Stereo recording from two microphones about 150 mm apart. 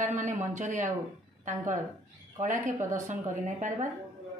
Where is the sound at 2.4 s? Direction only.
60° right (ahead or behind).